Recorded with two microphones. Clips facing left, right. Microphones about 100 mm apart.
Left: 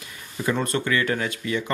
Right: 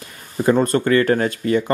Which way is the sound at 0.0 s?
40° right (ahead or behind).